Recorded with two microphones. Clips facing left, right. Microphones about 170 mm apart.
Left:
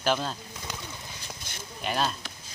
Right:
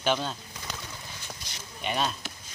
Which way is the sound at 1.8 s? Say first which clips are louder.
Left 1 dB; centre (ahead or behind).